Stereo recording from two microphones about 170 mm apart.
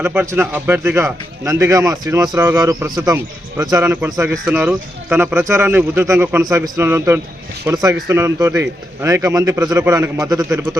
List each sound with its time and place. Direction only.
0.0 s a man's voice: 10° right (ahead or behind)